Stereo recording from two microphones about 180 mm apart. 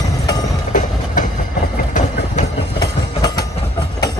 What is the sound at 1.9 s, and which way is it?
Vehicle, 45° left (ahead or behind).